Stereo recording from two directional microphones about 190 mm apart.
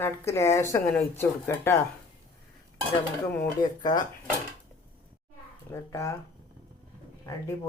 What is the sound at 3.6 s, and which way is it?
Speech, 20° left (ahead or behind).